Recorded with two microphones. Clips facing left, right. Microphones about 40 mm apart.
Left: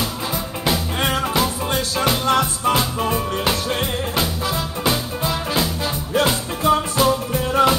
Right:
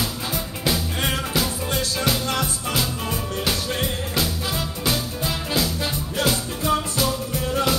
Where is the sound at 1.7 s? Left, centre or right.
Left.